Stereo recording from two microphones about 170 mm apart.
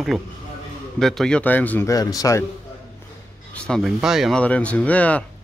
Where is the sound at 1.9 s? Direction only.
20° left (ahead or behind).